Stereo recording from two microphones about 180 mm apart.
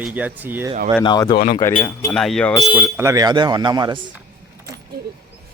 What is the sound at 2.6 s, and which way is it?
Speech, 10° right (ahead or behind).